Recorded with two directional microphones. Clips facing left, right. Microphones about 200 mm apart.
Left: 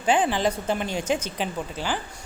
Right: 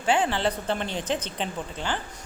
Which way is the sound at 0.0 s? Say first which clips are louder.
Left 2 dB; 20° left (ahead or behind).